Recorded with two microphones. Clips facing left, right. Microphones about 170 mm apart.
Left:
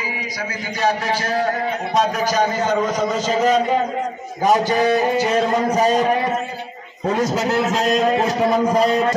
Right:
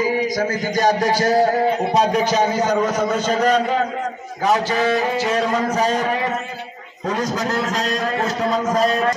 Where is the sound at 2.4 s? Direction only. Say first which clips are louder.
Right 1 dB; 15° right (ahead or behind); by 3.6 s 5° left (ahead or behind).